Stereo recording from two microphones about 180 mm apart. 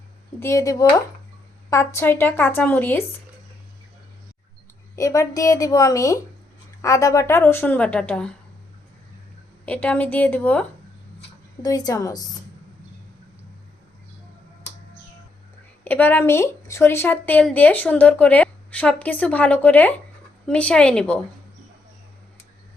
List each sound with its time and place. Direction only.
0.3 s speech: 15° left (ahead or behind)
4.9 s speech: 15° left (ahead or behind)
9.6 s speech: 5° left (ahead or behind)
11.6 s a woman's voice: 20° left (ahead or behind)
15.8 s speech: 10° left (ahead or behind)